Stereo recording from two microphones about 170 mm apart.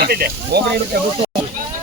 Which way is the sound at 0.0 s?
70° right (ahead or behind).